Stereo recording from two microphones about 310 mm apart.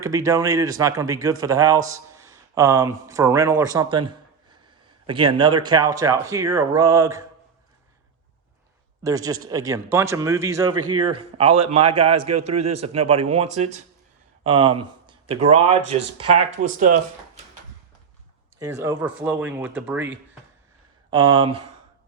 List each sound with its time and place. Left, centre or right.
0.0 s speech: centre
9.0 s speech: centre
12.6 s a man's voice: right
12.9 s speech: centre
18.6 s speech: centre